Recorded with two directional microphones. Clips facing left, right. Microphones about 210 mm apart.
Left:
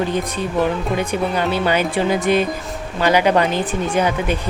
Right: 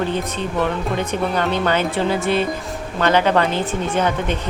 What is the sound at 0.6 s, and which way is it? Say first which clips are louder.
A man's voice: left 2 dB; 5° left (ahead or behind).